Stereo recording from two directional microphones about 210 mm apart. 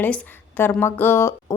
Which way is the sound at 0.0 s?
10° left (ahead or behind).